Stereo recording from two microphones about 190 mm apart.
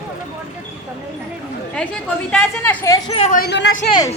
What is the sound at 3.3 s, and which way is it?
Speech, 60° left (ahead or behind).